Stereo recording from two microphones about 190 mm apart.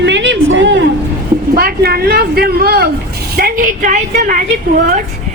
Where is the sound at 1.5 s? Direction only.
55° right (ahead or behind).